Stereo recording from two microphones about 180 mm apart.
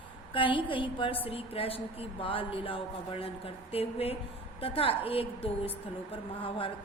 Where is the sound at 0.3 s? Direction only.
30° left (ahead or behind).